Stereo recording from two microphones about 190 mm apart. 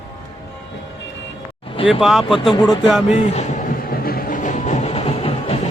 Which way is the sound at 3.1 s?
35° left (ahead or behind).